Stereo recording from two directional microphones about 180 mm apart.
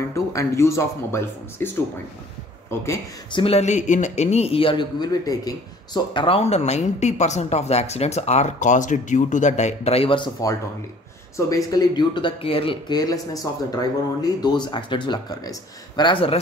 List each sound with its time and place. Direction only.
0.1 s speech: 15° left (ahead or behind)
2.7 s speech: 15° left (ahead or behind)
3.3 s speech: 35° left (ahead or behind)